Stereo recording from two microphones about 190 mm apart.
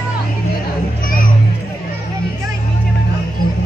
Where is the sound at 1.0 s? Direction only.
45° left (ahead or behind).